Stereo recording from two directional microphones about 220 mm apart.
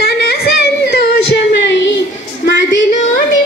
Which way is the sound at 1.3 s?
50° left (ahead or behind).